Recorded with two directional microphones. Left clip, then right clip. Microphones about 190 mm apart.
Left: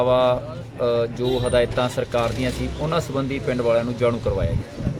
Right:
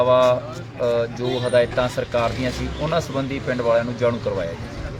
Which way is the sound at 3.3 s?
40° left (ahead or behind).